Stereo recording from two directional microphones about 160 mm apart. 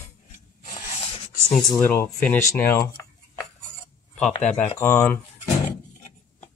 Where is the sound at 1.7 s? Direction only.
15° left (ahead or behind).